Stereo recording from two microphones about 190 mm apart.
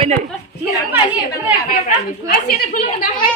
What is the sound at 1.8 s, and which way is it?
A woman's voice, 50° left (ahead or behind).